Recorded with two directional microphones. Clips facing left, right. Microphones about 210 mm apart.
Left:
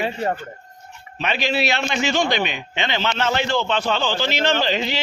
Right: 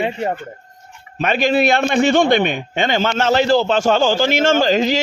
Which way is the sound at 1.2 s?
50° right (ahead or behind).